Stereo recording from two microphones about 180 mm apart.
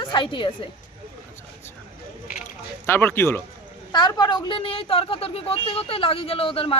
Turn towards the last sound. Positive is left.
turn(degrees=30)  # may be behind; listen again after turning